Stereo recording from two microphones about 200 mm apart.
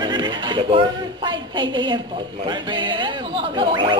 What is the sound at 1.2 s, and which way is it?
A woman's voice, 25° right (ahead or behind).